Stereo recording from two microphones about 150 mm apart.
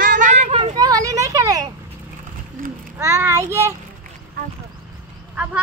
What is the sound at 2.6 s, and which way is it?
Speech, 70° right (ahead or behind).